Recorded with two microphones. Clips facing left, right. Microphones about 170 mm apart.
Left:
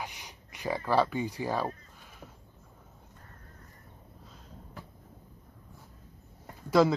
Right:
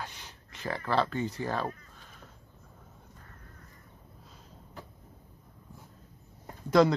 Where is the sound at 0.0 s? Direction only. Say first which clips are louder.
Left 1 dB; 15° left (ahead or behind).